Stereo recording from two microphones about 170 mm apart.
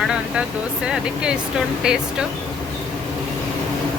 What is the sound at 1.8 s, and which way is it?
Speech, 5° right (ahead or behind).